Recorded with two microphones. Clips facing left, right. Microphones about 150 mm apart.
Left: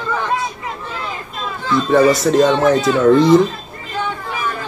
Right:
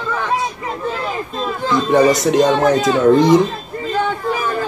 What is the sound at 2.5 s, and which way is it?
Speech, 40° right (ahead or behind).